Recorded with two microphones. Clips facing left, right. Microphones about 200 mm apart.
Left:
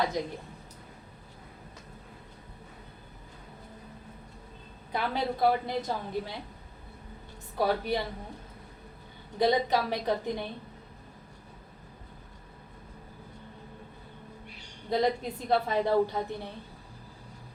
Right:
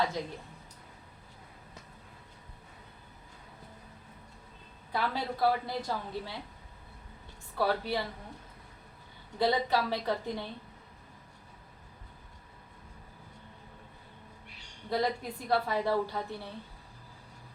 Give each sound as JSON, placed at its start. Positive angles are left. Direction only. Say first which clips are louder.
{"t": 0.2, "sound": "a woman's voice", "louder": "left 4 dB", "side_deg": 15}
{"t": 4.9, "sound": "a woman's voice", "louder": "left 3 dB", "side_deg": 20}
{"t": 7.5, "sound": "a woman's voice", "louder": "left 2 dB", "side_deg": 20}
{"t": 9.4, "sound": "a woman's voice", "louder": "left 3 dB", "side_deg": 20}
{"t": 14.8, "sound": "a woman's voice", "louder": "left 4 dB", "side_deg": 20}